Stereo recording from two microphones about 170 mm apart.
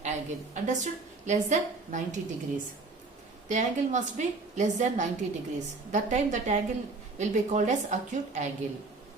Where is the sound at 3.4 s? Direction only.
45° right (ahead or behind).